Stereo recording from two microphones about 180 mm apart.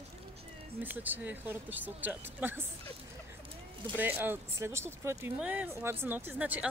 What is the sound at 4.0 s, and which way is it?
Speech, 10° right (ahead or behind).